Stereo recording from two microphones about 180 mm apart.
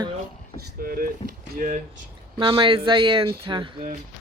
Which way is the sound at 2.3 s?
30° right (ahead or behind).